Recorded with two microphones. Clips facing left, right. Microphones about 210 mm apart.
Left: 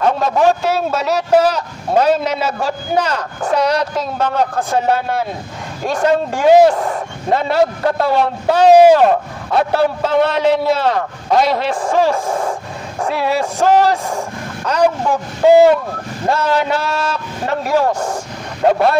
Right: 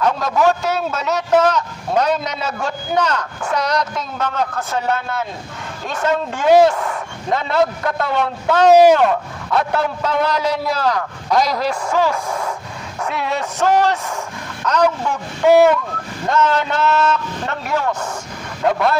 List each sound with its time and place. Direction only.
0.0 s a man's voice: 30° left (ahead or behind)
16.4 s a man's voice: 10° left (ahead or behind)
16.7 s a man's voice: 35° left (ahead or behind)